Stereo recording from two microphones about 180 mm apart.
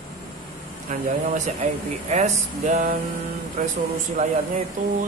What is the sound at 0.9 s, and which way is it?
A man's voice, 45° right (ahead or behind).